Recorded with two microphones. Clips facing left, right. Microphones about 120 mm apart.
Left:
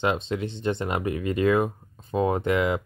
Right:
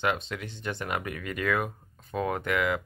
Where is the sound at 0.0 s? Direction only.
25° left (ahead or behind).